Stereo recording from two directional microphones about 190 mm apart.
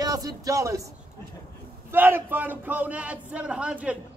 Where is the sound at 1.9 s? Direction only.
10° right (ahead or behind).